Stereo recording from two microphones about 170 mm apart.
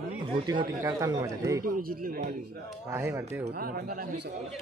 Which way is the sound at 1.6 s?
55° right (ahead or behind).